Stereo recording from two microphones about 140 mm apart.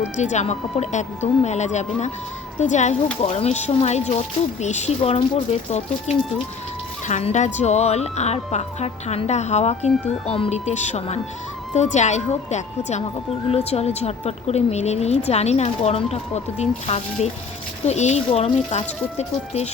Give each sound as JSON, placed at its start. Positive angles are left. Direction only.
{"t": 0.0, "sound": "a woman's voice", "side_deg": 55}